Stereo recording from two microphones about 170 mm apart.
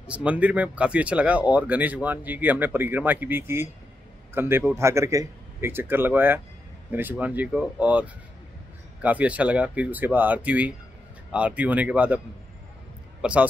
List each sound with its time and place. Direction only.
0.0 s speech: 5° right (ahead or behind)
13.2 s speech: 5° right (ahead or behind)